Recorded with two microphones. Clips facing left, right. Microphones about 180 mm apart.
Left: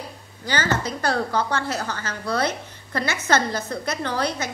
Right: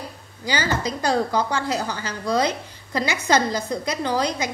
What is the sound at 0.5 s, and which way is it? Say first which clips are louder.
A woman's voice: even; 10° right (ahead or behind).